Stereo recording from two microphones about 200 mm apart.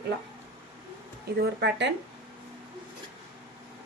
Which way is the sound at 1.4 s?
55° right (ahead or behind).